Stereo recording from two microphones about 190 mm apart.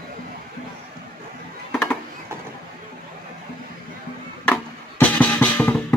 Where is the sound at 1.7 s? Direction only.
5° left (ahead or behind).